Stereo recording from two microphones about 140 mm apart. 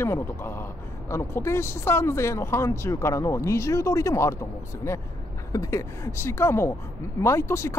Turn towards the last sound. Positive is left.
turn(degrees=20)  # may be behind; listen again after turning